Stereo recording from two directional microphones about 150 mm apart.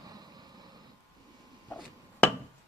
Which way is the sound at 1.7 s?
Centre (ahead or behind).